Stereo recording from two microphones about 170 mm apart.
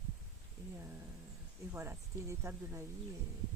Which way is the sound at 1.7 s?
15° right (ahead or behind).